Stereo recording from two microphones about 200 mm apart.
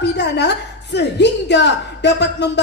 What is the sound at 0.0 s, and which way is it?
A woman's voice, 60° left (ahead or behind).